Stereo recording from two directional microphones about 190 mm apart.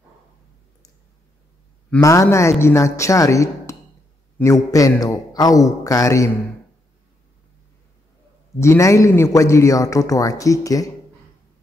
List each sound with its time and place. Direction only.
1.9 s a man's voice: 15° left (ahead or behind)
8.5 s a man's voice: 15° left (ahead or behind)